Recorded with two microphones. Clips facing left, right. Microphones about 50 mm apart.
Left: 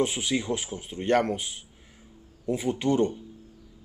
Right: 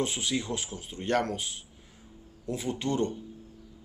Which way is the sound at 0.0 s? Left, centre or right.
Centre.